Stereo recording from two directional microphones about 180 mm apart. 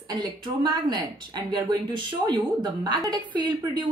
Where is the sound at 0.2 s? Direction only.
25° right (ahead or behind).